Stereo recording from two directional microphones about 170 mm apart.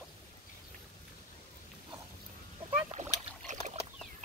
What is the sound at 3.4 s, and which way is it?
Rowboat, 45° right (ahead or behind).